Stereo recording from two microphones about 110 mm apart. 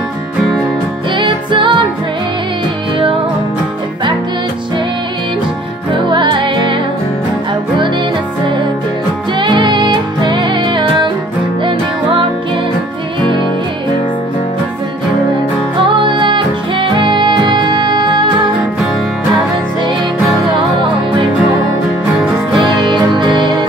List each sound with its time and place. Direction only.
1.1 s music: 45° right (ahead or behind)
5.9 s music: 45° right (ahead or behind)
9.4 s music: 45° right (ahead or behind)
15.8 s music: 50° right (ahead or behind)
22.7 s music: 45° right (ahead or behind)